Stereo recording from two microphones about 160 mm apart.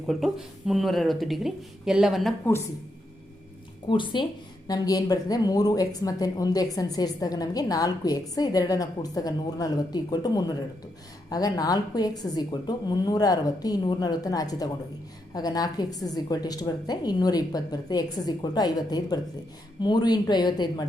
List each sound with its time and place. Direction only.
0.1 s speech: centre (ahead or behind)
3.8 s a woman's voice: 30° left (ahead or behind)